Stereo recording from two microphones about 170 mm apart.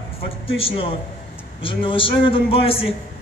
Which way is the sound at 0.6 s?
30° left (ahead or behind).